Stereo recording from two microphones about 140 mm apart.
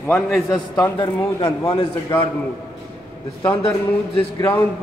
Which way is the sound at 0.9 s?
35° left (ahead or behind).